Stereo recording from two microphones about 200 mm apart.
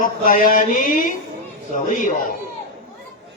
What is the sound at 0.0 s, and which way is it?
A man's voice, 45° left (ahead or behind).